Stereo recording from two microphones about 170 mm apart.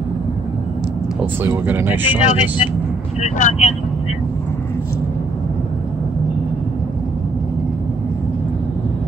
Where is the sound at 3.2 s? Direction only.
45° left (ahead or behind).